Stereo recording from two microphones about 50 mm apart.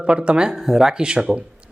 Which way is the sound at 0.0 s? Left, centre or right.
Right.